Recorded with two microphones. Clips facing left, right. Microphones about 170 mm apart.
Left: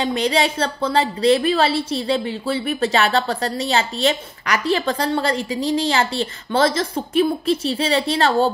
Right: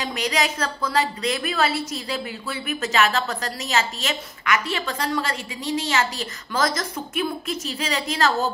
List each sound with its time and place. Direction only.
0.0 s a woman's voice: 30° left (ahead or behind)